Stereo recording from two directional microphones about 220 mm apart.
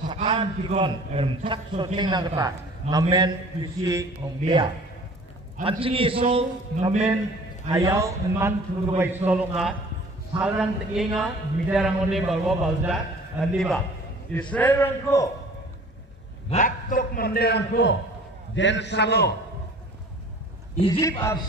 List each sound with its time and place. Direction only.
0.1 s a man's voice: 25° right (ahead or behind)
7.7 s a man's voice: 15° right (ahead or behind); by 15.2 s 10° left (ahead or behind)
16.4 s a man's voice: 35° left (ahead or behind)
20.8 s a man's voice: 25° left (ahead or behind)